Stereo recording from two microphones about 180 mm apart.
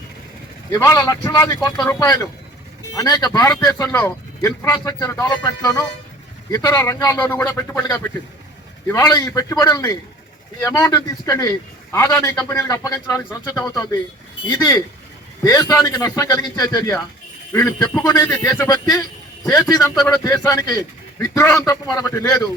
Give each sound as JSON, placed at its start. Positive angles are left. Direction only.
{"t": 0.7, "sound": "a man's voice", "side_deg": 15}